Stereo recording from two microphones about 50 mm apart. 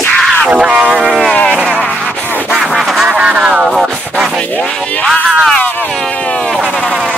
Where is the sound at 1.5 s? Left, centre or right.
Centre.